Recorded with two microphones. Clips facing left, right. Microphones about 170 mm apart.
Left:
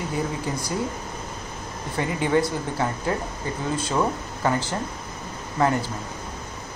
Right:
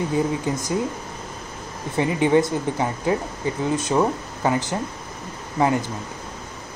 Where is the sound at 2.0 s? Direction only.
20° right (ahead or behind).